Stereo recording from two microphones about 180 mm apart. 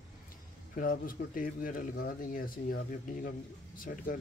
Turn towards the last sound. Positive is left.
turn(degrees=50)  # may be behind; listen again after turning